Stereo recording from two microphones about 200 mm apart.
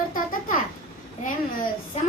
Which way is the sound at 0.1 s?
45° left (ahead or behind).